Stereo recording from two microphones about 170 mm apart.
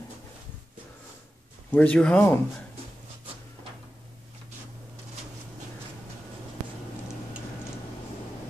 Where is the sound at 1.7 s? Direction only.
5° left (ahead or behind).